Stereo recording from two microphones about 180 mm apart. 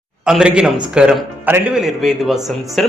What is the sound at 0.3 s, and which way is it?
A man's voice, 5° right (ahead or behind).